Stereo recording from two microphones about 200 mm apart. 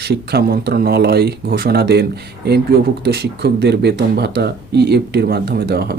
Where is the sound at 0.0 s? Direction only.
55° right (ahead or behind).